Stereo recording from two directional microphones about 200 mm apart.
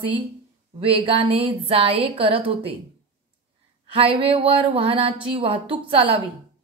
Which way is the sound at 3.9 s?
25° right (ahead or behind).